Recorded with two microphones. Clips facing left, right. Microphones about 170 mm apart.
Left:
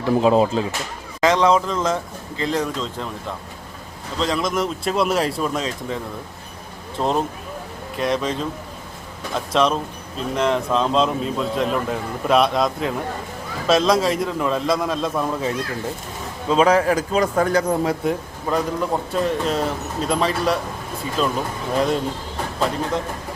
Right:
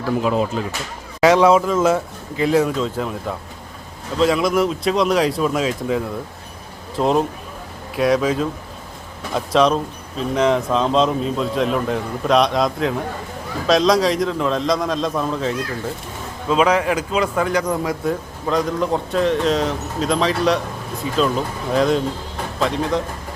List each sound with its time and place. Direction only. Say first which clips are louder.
0.0 s speech: left 3 dB; 30° left (ahead or behind)
1.2 s speech: right 4 dB; 10° right (ahead or behind)
4.2 s speech: right 5 dB; 5° right (ahead or behind)
16.5 s speech: left 1 dB; 40° left (ahead or behind)
18.4 s speech: right 2 dB; 5° left (ahead or behind)